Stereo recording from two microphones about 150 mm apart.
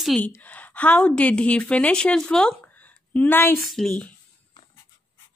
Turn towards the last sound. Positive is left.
turn(degrees=5)  # may be behind; listen again after turning